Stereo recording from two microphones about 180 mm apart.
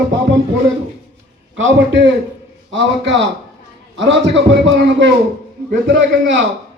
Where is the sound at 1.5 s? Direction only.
90° right.